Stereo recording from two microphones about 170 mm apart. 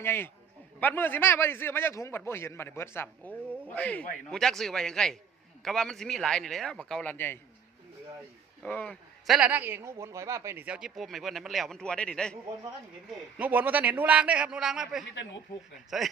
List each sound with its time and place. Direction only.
0.0 s a man's voice: 15° left (ahead or behind)
8.6 s a man's voice: 10° left (ahead or behind)
13.4 s speech: 10° right (ahead or behind)
15.1 s speech: 90° left
15.9 s a man's voice: centre (ahead or behind)